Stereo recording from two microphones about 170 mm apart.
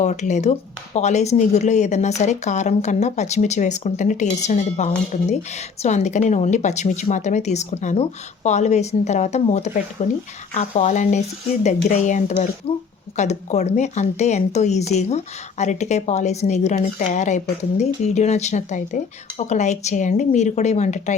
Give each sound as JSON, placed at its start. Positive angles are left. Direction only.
{"t": 0.0, "sound": "a woman's voice", "side_deg": 45}